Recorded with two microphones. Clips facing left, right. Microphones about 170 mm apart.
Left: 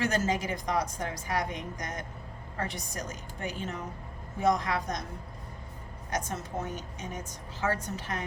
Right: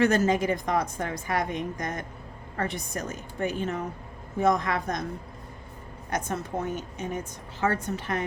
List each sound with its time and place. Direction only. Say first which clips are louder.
0.0 s a woman's voice: right 7 dB; 60° right (ahead or behind)
6.1 s a woman's voice: right 4 dB; 60° right (ahead or behind)